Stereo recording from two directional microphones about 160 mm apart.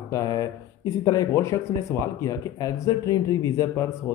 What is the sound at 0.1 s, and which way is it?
Speech, 20° left (ahead or behind).